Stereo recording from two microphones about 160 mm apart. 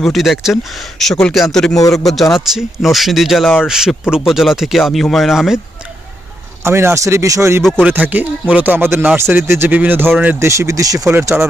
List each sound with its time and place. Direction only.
0.0 s speech: centre (ahead or behind)
6.6 s speech: 15° right (ahead or behind)